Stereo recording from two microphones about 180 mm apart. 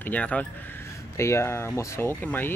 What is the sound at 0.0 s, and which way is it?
Speech, 10° left (ahead or behind).